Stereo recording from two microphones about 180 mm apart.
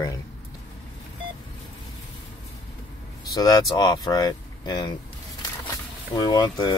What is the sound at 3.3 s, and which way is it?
Speech, 20° left (ahead or behind).